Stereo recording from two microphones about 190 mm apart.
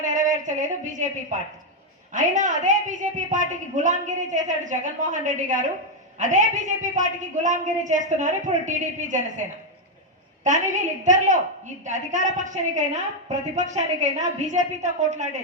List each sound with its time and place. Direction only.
0.0 s a woman's voice: 40° right (ahead or behind)
10.4 s a woman's voice: 40° right (ahead or behind)